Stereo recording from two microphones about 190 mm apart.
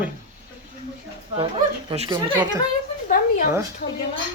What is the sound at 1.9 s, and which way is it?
Speech, 25° right (ahead or behind).